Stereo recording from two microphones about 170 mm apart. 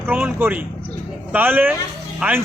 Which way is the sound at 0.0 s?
10° right (ahead or behind).